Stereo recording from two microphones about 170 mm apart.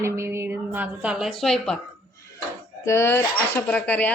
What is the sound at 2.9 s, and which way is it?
Speech, 15° left (ahead or behind).